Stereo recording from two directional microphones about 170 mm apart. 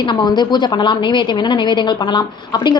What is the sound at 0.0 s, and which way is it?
A woman's voice, 25° left (ahead or behind).